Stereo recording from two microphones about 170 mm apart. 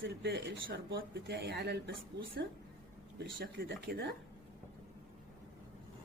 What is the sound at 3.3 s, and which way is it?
Speech, 60° right (ahead or behind).